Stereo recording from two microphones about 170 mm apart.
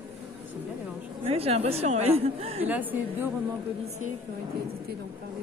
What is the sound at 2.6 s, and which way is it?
Speech, 10° right (ahead or behind).